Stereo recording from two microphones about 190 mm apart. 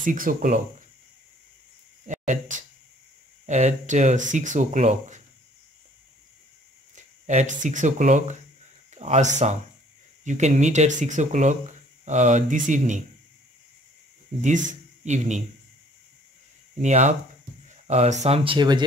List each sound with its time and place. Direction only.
0.0 s speech: 45° right (ahead or behind)
2.0 s speech: 40° right (ahead or behind)
7.0 s speech: 40° right (ahead or behind)
14.4 s speech: 40° right (ahead or behind)
16.7 s speech: 40° right (ahead or behind)